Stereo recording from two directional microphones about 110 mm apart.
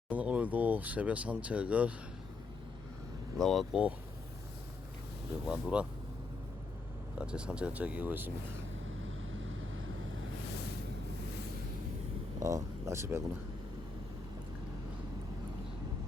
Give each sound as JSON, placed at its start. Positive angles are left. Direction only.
{"t": 0.1, "sound": "speech", "side_deg": -15}
{"t": 3.3, "sound": "speech", "side_deg": 0}
{"t": 5.5, "sound": "speech", "side_deg": -10}
{"t": 7.2, "sound": "speech", "side_deg": -10}
{"t": 12.4, "sound": "speech", "side_deg": -30}